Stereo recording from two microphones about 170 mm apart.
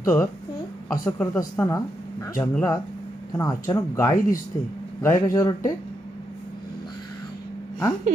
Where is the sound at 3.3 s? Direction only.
20° left (ahead or behind).